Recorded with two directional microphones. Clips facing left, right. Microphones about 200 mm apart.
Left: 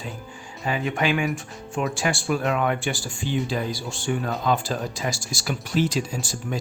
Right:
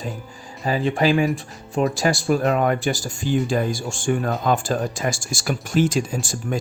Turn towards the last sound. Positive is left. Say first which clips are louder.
# right 4 dB
turn(degrees=-50)  # may be behind; listen again after turning